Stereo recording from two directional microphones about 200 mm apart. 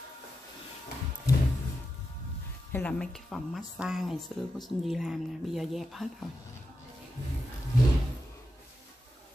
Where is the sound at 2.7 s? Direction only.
10° left (ahead or behind).